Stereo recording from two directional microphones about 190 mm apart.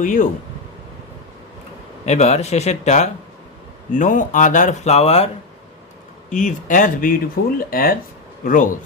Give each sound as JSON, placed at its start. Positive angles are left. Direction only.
{"t": 0.0, "sound": "speech", "side_deg": 45}
{"t": 2.0, "sound": "speech", "side_deg": 35}
{"t": 6.3, "sound": "speech", "side_deg": 40}